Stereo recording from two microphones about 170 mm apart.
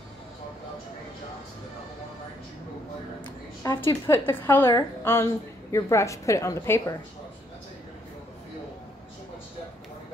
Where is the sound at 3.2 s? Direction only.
15° left (ahead or behind).